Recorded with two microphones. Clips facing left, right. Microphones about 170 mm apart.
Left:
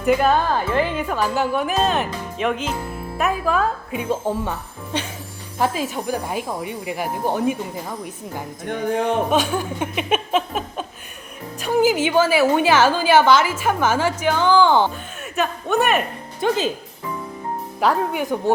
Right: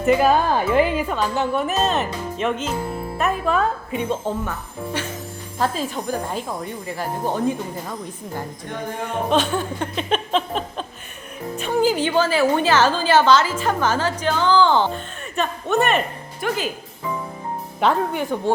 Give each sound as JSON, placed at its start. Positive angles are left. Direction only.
{"t": 0.0, "sound": "speech", "side_deg": 0}
{"t": 1.1, "sound": "speech", "side_deg": 5}
{"t": 5.5, "sound": "a woman's voice", "side_deg": 10}
{"t": 9.5, "sound": "a woman's voice", "side_deg": 10}
{"t": 15.2, "sound": "a man's voice", "side_deg": 0}
{"t": 16.4, "sound": "speech", "side_deg": 25}
{"t": 17.7, "sound": "a woman's voice", "side_deg": 5}